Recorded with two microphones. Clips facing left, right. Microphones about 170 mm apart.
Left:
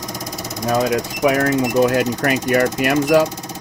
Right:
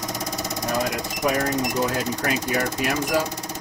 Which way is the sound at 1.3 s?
75° left (ahead or behind).